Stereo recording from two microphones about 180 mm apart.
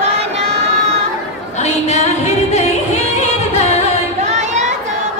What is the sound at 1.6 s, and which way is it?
Singing, 40° left (ahead or behind).